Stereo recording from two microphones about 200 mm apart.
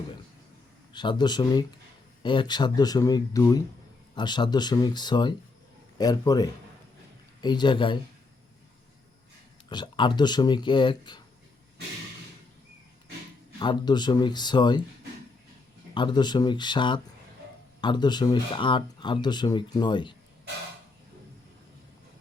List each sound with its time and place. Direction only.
0.9 s speech: 20° left (ahead or behind)
9.6 s speech: 25° left (ahead or behind)
13.6 s speech: 20° left (ahead or behind)
16.0 s speech: 20° left (ahead or behind)